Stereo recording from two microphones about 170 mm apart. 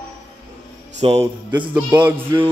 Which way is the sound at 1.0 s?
40° right (ahead or behind).